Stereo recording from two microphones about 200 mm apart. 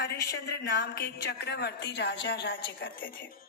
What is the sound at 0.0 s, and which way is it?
A woman's voice, 50° left (ahead or behind).